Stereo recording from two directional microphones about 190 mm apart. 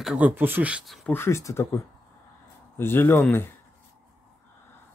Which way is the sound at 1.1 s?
15° left (ahead or behind).